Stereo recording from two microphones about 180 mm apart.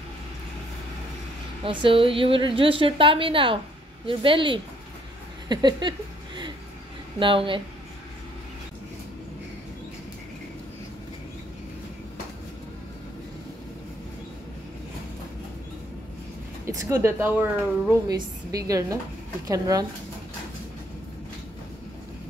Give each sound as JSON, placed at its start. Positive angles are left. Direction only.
{"t": 1.6, "sound": "a woman's voice", "side_deg": -30}
{"t": 5.5, "sound": "a sound", "side_deg": -25}
{"t": 7.2, "sound": "a woman's voice", "side_deg": -30}
{"t": 16.6, "sound": "a woman's voice", "side_deg": -15}